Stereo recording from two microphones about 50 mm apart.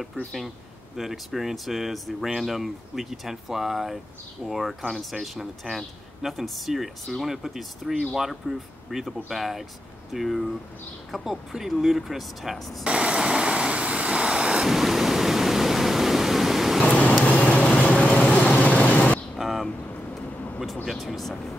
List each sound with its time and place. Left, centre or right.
0.9 s speech: centre
12.8 s vehicle: right; by 16.8 s centre
16.8 s vehicle: left
19.3 s a sound: centre
20.9 s speech: centre